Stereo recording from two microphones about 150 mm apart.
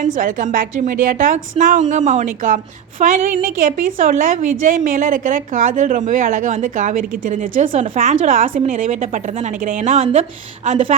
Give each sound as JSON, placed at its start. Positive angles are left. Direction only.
{"t": 0.0, "sound": "speech", "side_deg": -65}